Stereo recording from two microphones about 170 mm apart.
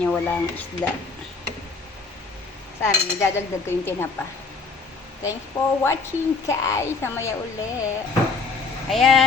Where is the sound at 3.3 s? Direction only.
15° left (ahead or behind).